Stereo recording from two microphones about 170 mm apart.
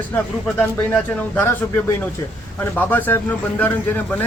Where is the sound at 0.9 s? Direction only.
10° left (ahead or behind).